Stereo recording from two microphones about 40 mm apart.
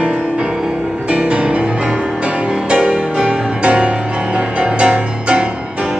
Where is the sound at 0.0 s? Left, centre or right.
Right.